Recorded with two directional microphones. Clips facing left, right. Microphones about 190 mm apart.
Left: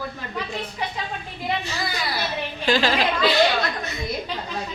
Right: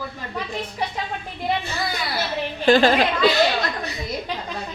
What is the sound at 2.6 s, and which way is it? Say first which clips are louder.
Speech: right 5 dB; 55° right (ahead or behind).